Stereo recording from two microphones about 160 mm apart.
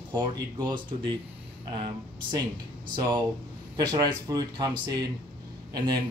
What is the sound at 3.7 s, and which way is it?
Speech, 25° right (ahead or behind).